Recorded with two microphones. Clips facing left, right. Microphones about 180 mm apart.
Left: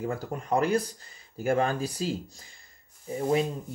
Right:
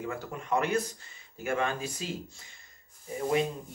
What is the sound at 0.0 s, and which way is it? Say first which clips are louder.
Speech: left 4 dB; 40° left (ahead or behind).